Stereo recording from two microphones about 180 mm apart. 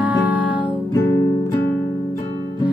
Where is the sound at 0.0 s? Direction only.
10° right (ahead or behind).